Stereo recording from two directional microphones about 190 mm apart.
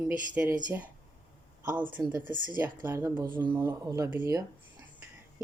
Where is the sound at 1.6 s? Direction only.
20° right (ahead or behind).